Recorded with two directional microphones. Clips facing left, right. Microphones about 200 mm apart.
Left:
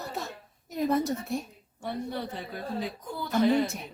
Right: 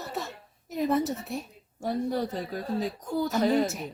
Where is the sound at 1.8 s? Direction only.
40° right (ahead or behind).